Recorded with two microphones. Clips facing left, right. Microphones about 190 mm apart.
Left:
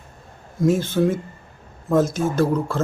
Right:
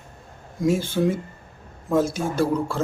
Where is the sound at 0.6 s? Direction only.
10° right (ahead or behind).